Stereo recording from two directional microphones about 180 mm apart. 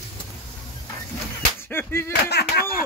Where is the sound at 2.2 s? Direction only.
65° left (ahead or behind).